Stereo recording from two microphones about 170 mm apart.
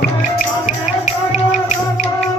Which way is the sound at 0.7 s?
45° left (ahead or behind).